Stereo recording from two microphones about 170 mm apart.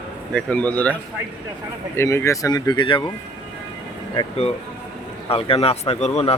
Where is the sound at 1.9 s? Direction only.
15° left (ahead or behind).